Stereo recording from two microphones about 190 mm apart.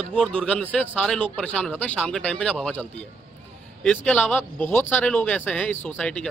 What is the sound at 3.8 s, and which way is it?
Speech, 10° left (ahead or behind).